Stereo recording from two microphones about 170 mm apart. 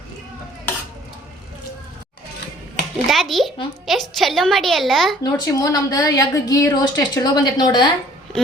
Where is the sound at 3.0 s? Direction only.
Centre (ahead or behind).